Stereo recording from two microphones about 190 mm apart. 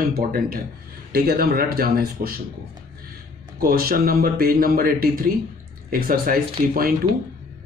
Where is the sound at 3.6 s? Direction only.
50° right (ahead or behind).